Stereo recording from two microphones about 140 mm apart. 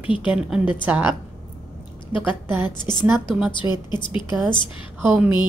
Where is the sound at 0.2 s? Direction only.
5° right (ahead or behind).